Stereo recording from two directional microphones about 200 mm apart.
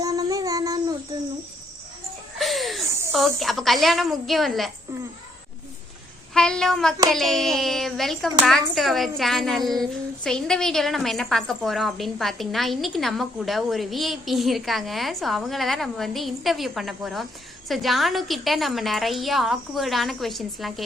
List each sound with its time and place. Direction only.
0.0 s child singing: 20° right (ahead or behind)
2.4 s chuckle: centre (ahead or behind)
3.1 s a woman's voice: centre (ahead or behind)
6.3 s a woman's voice: 5° left (ahead or behind)